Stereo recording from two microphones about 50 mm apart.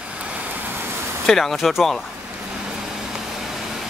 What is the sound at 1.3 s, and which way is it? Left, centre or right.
Speech, centre.